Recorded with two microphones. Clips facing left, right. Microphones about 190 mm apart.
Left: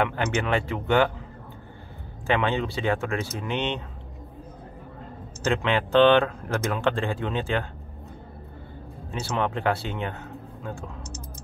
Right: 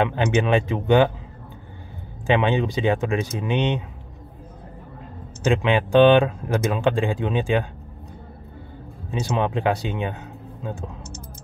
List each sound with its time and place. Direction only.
0.0 s speech: 20° right (ahead or behind)
2.2 s speech: 15° right (ahead or behind)
5.4 s speech: 15° right (ahead or behind)
9.2 s speech: 15° right (ahead or behind)